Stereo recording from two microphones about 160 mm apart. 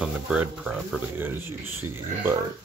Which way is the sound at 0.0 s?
5° right (ahead or behind).